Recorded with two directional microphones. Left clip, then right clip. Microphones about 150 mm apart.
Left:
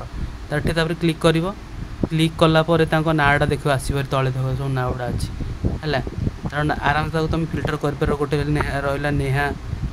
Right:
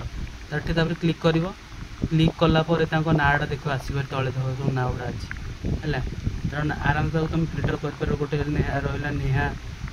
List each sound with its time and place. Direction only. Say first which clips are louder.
0.5 s speech: left 4 dB; 25° left (ahead or behind)
5.9 s speech: left 8 dB; 35° left (ahead or behind)